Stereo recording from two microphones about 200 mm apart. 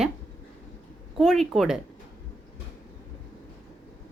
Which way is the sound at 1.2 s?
Centre (ahead or behind).